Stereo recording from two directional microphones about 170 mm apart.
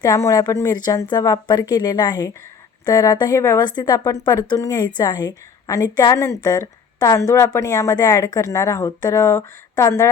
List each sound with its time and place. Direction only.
0.0 s speech: 20° left (ahead or behind)